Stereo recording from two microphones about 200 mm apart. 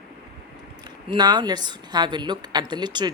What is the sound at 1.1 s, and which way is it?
Speech, 20° right (ahead or behind).